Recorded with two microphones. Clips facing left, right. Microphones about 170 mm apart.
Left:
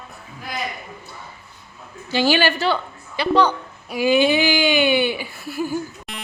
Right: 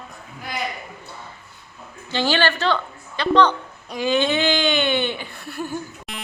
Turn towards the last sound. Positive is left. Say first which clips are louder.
# left 4 dB
turn(degrees=5)  # may be behind; listen again after turning